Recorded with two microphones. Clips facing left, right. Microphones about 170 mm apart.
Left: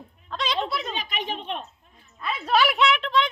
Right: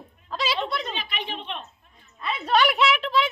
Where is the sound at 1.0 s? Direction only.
45° left (ahead or behind).